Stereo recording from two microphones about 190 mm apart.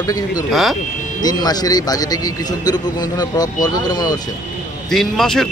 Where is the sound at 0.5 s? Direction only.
Centre (ahead or behind).